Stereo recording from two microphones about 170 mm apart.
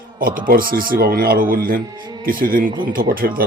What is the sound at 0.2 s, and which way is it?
Speech, 55° right (ahead or behind).